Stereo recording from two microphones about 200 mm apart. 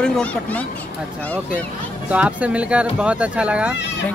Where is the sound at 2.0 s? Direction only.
5° right (ahead or behind).